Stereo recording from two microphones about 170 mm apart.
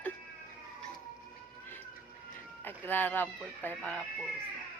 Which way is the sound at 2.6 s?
10° left (ahead or behind).